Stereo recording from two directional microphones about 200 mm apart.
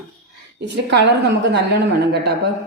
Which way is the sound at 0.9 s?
60° right (ahead or behind).